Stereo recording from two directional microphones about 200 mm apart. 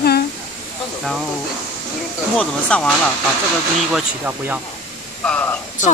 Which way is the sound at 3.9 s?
5° right (ahead or behind).